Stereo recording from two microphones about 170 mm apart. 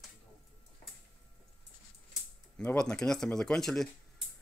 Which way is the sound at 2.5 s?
5° left (ahead or behind).